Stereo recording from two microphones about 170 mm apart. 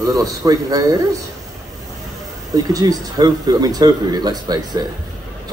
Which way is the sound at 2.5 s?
20° right (ahead or behind).